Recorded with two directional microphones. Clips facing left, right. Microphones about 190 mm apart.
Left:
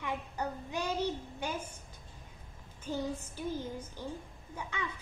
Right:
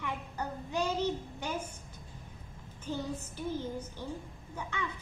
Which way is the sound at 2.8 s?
10° left (ahead or behind).